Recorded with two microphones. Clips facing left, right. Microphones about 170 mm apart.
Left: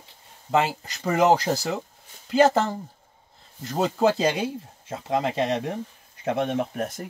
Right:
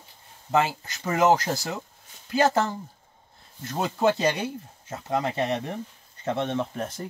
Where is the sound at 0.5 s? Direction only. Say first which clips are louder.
Left 1 dB; 20° left (ahead or behind).